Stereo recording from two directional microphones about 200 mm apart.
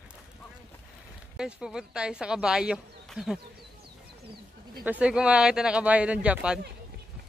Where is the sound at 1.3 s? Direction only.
5° right (ahead or behind).